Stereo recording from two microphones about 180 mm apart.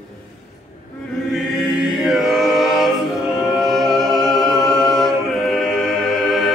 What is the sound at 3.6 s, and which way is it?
A capella, centre (ahead or behind).